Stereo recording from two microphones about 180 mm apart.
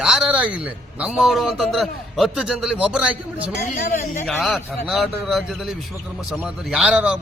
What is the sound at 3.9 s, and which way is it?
Speech, 40° left (ahead or behind).